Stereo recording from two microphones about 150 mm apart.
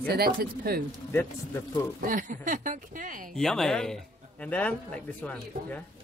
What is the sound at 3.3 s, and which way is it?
A man's voice, 5° left (ahead or behind).